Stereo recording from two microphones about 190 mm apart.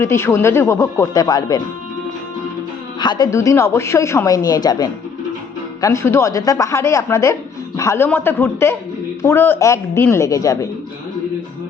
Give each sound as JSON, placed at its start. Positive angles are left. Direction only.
{"t": 0.0, "sound": "a woman's voice", "side_deg": 15}
{"t": 3.0, "sound": "a woman's voice", "side_deg": 20}